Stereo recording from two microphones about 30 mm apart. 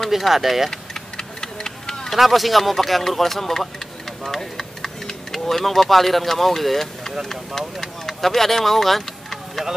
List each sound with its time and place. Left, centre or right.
0.3 s speech: centre
0.7 s a sound: centre
2.1 s speech: centre